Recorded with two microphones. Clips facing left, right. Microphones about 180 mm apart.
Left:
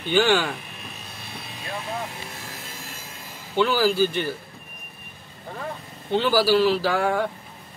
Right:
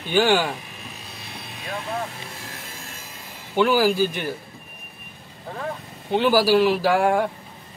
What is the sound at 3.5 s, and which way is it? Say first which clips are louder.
Speech: right 2 dB; 15° right (ahead or behind).